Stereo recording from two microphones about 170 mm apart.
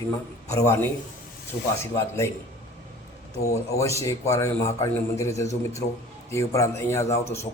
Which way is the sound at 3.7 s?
20° left (ahead or behind).